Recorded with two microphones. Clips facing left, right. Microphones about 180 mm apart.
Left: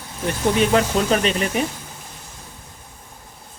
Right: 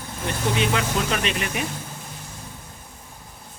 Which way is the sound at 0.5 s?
40° left (ahead or behind).